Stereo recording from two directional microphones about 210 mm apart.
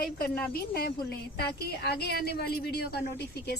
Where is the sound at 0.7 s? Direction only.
50° left (ahead or behind).